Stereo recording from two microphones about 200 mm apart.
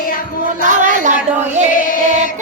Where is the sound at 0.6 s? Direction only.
40° right (ahead or behind).